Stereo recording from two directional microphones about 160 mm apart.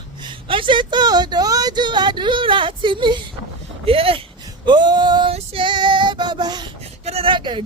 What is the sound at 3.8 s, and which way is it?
Speech, 35° right (ahead or behind).